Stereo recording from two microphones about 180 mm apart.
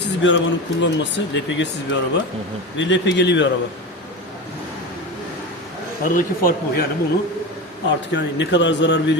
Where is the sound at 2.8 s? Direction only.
90° left.